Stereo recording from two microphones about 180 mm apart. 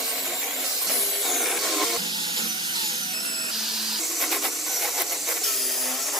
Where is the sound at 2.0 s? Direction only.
25° right (ahead or behind).